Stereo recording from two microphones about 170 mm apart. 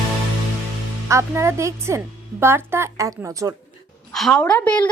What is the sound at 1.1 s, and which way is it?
A woman's voice, 15° right (ahead or behind).